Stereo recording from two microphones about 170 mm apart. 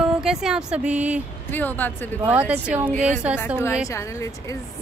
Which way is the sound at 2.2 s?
10° right (ahead or behind).